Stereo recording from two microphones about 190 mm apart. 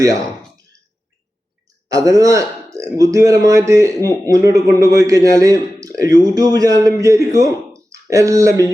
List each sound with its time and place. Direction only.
0.0 s clicking: 20° right (ahead or behind)
1.9 s a man's voice: 20° right (ahead or behind)